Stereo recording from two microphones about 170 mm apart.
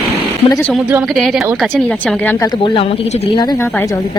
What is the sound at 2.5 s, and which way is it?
Speech, 30° left (ahead or behind).